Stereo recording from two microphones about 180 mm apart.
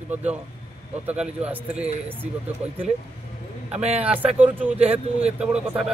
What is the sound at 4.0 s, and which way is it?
A man's voice, 10° right (ahead or behind).